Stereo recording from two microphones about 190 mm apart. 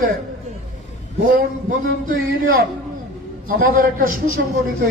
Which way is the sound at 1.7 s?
50° right (ahead or behind).